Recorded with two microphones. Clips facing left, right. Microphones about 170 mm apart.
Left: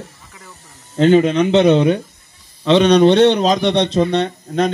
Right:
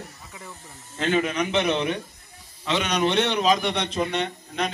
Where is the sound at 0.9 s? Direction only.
35° left (ahead or behind).